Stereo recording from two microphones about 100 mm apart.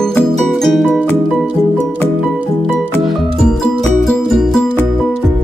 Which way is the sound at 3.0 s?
Centre (ahead or behind).